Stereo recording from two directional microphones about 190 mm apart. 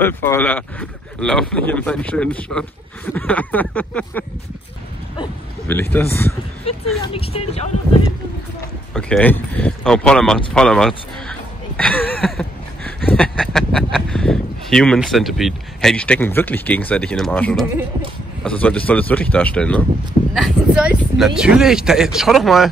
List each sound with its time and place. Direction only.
0.0 s speech: 10° left (ahead or behind)
5.7 s speech: 10° left (ahead or behind)
7.2 s speech: 30° left (ahead or behind)
8.9 s speech: 5° left (ahead or behind)